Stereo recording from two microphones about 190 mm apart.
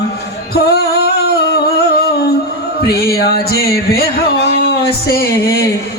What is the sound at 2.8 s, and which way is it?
Speech, 60° left (ahead or behind).